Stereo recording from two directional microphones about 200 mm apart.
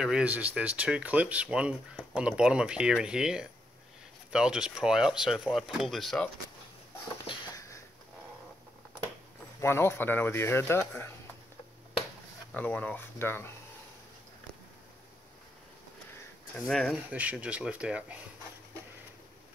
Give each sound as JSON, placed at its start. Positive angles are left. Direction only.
{"t": 0.0, "sound": "speech", "side_deg": -5}
{"t": 7.2, "sound": "a sound", "side_deg": 15}
{"t": 9.6, "sound": "speech", "side_deg": 10}
{"t": 12.5, "sound": "speech", "side_deg": 5}
{"t": 16.5, "sound": "speech", "side_deg": 0}